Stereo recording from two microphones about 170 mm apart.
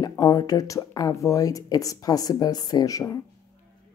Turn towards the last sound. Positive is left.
turn(degrees=20)  # may be behind; listen again after turning